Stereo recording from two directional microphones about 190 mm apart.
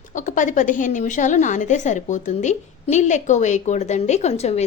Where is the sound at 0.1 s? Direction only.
40° left (ahead or behind).